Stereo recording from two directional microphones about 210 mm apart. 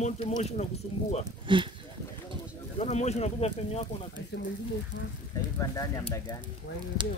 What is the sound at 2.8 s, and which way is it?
Speech, 30° left (ahead or behind).